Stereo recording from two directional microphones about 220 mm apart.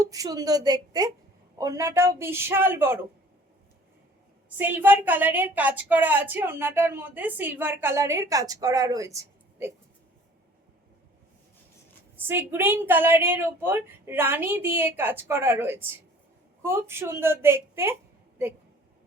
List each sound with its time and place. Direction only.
0.0 s a woman's voice: 15° right (ahead or behind)
4.5 s a woman's voice: 10° right (ahead or behind)
12.3 s a woman's voice: 10° right (ahead or behind)